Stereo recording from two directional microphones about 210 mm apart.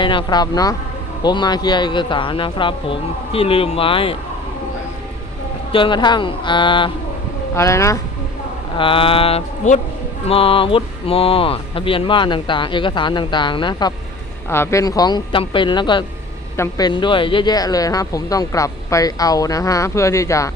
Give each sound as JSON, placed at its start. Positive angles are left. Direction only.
{"t": 0.0, "sound": "speech", "side_deg": 20}
{"t": 5.7, "sound": "speech", "side_deg": 25}
{"t": 8.8, "sound": "speech", "side_deg": 25}